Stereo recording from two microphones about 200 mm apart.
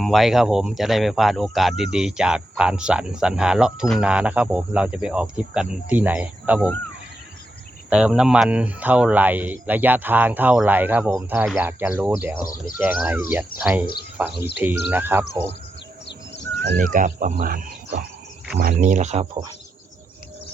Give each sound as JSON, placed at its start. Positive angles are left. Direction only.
{"t": 0.0, "sound": "speech", "side_deg": 0}
{"t": 7.9, "sound": "speech", "side_deg": -5}
{"t": 16.7, "sound": "speech", "side_deg": -40}